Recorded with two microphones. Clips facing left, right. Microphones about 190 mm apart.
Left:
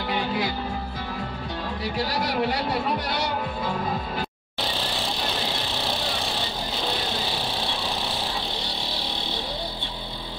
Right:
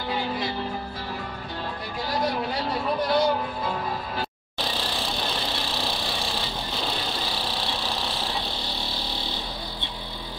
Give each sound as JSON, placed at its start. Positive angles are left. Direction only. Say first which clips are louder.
{"t": 2.0, "sound": "a man's voice", "louder": "right 1 dB", "side_deg": 75}